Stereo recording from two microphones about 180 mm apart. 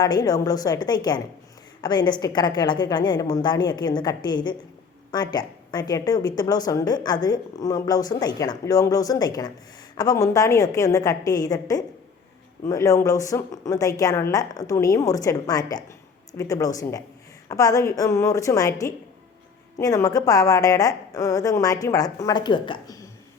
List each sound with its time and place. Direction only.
0.0 s a woman's voice: 20° left (ahead or behind)